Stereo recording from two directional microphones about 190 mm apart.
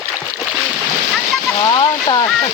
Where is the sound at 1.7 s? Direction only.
25° left (ahead or behind).